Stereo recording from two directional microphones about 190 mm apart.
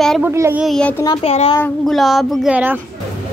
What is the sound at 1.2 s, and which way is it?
Speech, 30° left (ahead or behind).